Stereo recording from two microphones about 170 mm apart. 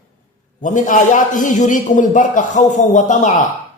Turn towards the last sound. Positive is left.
turn(degrees=45)  # may be behind; listen again after turning